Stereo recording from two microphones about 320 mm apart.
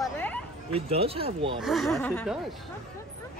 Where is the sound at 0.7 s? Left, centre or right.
Centre.